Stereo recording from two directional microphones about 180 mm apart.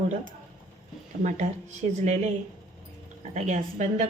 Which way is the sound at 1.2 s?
40° right (ahead or behind).